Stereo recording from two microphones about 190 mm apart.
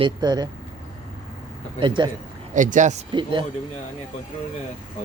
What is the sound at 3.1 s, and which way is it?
Speech, 25° right (ahead or behind).